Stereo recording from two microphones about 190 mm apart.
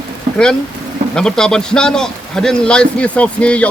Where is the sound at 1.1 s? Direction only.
5° left (ahead or behind).